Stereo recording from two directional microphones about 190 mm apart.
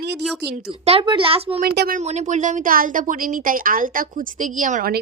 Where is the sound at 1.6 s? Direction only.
55° right (ahead or behind).